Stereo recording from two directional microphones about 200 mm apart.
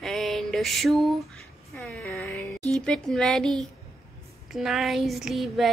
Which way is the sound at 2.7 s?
5° left (ahead or behind).